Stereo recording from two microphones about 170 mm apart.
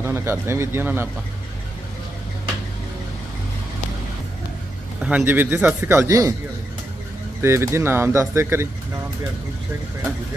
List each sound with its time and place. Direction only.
0.0 s speech: 15° right (ahead or behind)
5.0 s speech: 10° right (ahead or behind)
7.4 s speech: 15° right (ahead or behind)